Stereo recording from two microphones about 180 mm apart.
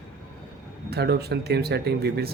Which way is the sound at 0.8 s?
65° right (ahead or behind).